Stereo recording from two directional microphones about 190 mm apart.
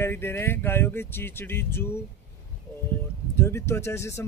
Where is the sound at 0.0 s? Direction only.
10° left (ahead or behind).